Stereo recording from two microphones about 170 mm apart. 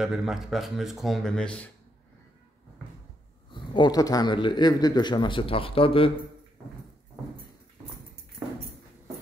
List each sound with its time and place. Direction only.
0.0 s speech: centre (ahead or behind)
3.5 s speech: 25° left (ahead or behind)